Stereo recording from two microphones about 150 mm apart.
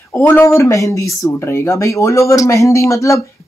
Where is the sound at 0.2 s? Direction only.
15° left (ahead or behind).